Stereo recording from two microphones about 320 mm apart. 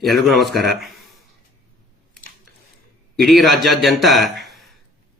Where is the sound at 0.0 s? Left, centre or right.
Centre.